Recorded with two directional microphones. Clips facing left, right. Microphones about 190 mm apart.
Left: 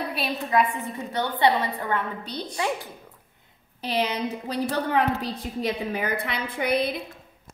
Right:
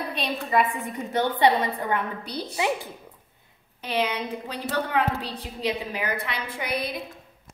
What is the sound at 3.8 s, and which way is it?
A woman's voice, 35° left (ahead or behind).